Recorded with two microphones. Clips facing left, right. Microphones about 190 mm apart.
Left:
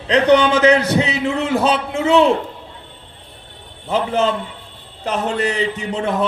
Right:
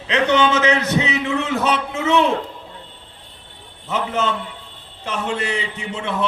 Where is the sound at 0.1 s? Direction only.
35° left (ahead or behind).